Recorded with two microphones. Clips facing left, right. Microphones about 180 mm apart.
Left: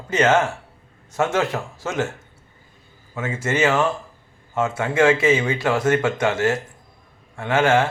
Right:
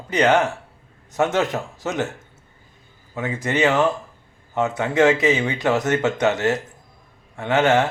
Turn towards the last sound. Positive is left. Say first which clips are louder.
# even
turn(degrees=-20)  # may be behind; listen again after turning